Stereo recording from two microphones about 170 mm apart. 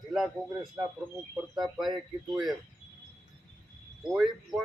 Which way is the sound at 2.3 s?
25° right (ahead or behind).